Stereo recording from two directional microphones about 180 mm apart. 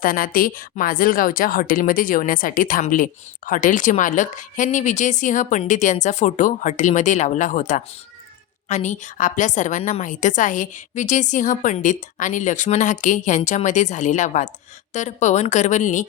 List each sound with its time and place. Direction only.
0.0 s a woman's voice: 50° left (ahead or behind)